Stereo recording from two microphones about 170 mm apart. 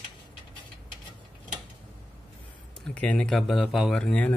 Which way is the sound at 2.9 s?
5° left (ahead or behind).